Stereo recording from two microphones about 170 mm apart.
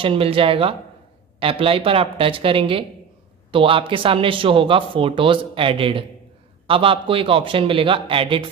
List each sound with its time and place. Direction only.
0.0 s a man's voice: 30° right (ahead or behind)